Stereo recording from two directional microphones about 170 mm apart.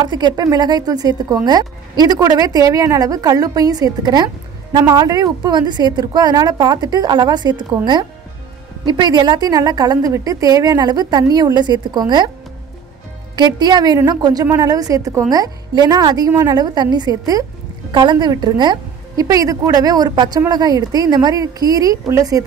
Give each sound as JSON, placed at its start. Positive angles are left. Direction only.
{"t": 0.0, "sound": "a woman's voice", "side_deg": -25}
{"t": 13.4, "sound": "a woman's voice", "side_deg": -25}